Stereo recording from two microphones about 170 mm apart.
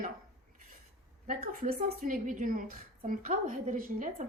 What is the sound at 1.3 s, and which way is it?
A woman's voice, 50° right (ahead or behind).